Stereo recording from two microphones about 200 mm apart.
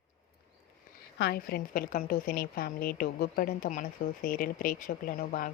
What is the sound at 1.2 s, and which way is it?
Speech, 50° left (ahead or behind).